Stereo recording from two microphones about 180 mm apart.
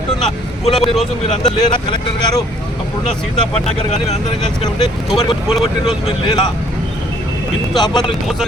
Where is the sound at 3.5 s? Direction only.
35° left (ahead or behind).